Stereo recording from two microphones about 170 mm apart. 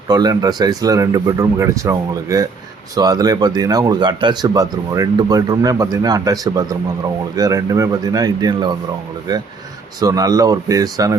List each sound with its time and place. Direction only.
0.1 s speech: 25° right (ahead or behind)